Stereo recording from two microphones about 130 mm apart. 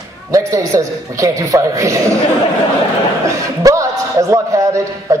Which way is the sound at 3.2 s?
25° right (ahead or behind).